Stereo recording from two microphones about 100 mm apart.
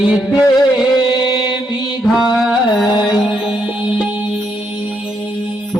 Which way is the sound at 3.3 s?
10° right (ahead or behind).